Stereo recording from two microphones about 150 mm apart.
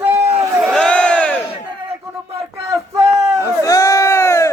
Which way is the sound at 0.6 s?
Centre (ahead or behind).